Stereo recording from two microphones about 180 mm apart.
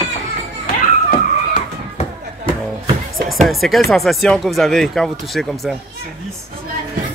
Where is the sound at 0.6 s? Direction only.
55° left (ahead or behind).